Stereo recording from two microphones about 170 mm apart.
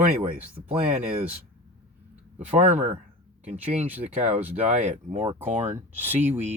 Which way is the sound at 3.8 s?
10° right (ahead or behind).